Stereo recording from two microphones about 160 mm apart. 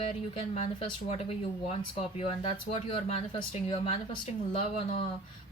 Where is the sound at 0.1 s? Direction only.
45° left (ahead or behind).